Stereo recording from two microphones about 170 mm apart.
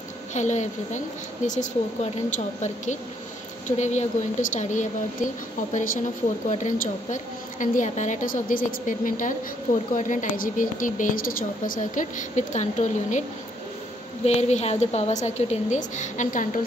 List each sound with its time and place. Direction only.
0.3 s a woman's voice: 45° left (ahead or behind)
14.2 s a woman's voice: 40° left (ahead or behind)